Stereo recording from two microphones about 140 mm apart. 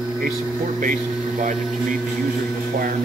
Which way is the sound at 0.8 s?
65° right (ahead or behind).